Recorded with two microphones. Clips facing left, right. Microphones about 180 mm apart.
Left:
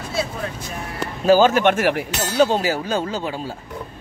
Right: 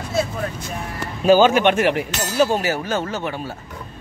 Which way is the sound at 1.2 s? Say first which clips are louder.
Right 1 dB; 15° right (ahead or behind).